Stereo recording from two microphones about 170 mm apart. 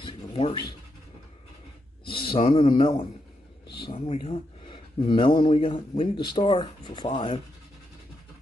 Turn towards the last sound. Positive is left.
turn(degrees=30)  # may be behind; listen again after turning